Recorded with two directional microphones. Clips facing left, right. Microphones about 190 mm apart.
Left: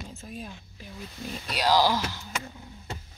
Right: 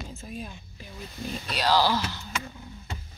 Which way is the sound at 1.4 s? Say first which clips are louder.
Left 1 dB; 10° left (ahead or behind).